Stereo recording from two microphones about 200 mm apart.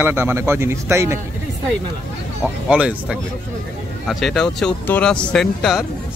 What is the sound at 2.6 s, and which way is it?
Speech, 5° right (ahead or behind).